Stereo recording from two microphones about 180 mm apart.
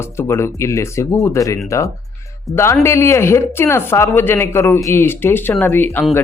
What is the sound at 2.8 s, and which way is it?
Speech, 15° left (ahead or behind).